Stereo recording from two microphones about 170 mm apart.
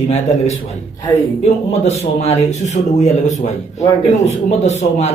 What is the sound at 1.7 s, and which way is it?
Speech, 40° left (ahead or behind).